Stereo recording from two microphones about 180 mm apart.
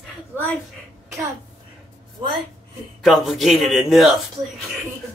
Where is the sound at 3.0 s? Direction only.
Centre (ahead or behind).